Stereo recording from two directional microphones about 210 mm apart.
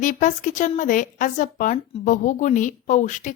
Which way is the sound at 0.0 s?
35° left (ahead or behind).